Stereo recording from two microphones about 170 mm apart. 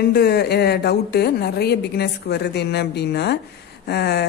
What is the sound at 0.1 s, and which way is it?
A woman's voice, 75° left (ahead or behind).